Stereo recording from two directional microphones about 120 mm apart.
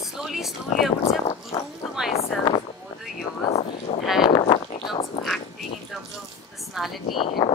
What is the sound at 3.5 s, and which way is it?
Speech, 65° left (ahead or behind).